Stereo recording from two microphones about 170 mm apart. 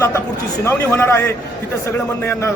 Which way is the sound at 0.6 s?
15° left (ahead or behind).